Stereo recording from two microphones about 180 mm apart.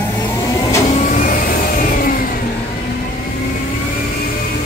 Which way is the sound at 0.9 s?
40° left (ahead or behind).